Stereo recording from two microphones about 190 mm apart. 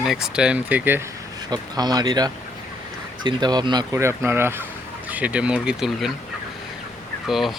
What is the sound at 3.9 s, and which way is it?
Speech, 15° right (ahead or behind).